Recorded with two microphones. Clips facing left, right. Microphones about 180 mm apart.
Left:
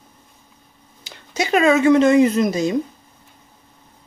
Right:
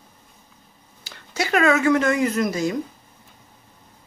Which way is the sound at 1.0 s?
20° left (ahead or behind).